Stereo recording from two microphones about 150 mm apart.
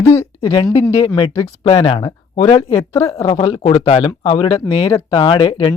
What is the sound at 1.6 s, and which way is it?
Speech, 40° left (ahead or behind).